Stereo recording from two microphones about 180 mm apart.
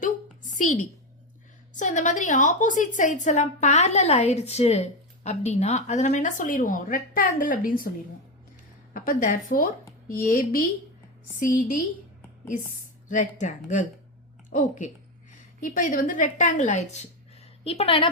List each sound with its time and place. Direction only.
0.0 s a sound: 45° left (ahead or behind)
1.7 s a woman's voice: 40° left (ahead or behind)
8.9 s a woman's voice: 50° left (ahead or behind)
13.1 s a woman's voice: 45° left (ahead or behind)
15.3 s a woman's voice: 45° left (ahead or behind); by 18.1 s 30° left (ahead or behind)